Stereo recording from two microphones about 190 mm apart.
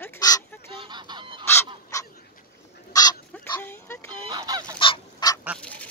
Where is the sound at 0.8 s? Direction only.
25° right (ahead or behind).